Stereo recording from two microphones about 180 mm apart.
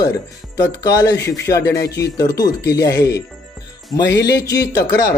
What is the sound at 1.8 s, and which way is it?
Speech, 65° left (ahead or behind).